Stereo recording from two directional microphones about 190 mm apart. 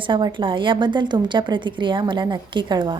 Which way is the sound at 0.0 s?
25° right (ahead or behind).